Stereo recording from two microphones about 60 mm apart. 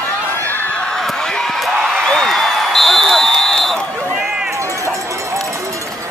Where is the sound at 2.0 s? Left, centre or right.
Centre.